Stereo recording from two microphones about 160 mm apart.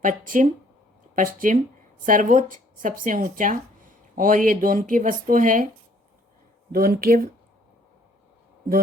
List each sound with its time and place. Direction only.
0.0 s speech: 55° right (ahead or behind)
6.7 s speech: 65° right (ahead or behind)